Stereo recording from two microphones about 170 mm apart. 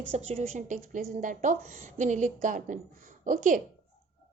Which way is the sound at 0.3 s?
50° right (ahead or behind).